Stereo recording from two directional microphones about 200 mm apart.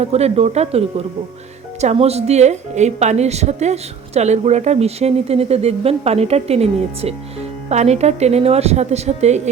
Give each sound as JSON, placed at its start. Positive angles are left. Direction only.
{"t": 0.0, "sound": "a woman's voice", "side_deg": -30}